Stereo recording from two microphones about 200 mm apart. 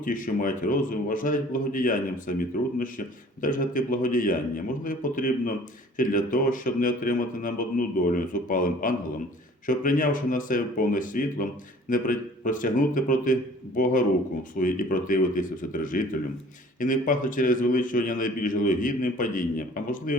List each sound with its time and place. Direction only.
0.0 s a man's voice: 40° left (ahead or behind)